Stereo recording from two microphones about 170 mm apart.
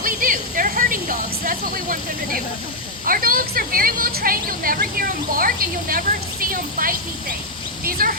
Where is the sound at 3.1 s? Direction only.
60° right (ahead or behind).